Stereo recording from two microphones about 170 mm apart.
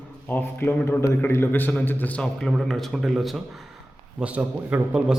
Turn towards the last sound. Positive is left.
turn(degrees=-5)  # may be behind; listen again after turning